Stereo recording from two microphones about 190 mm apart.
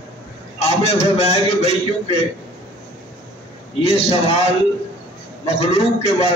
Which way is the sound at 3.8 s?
35° left (ahead or behind).